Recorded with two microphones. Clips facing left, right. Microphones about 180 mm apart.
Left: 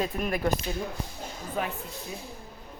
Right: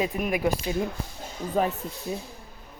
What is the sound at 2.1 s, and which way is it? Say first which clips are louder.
Speech: right 9 dB; 40° right (ahead or behind).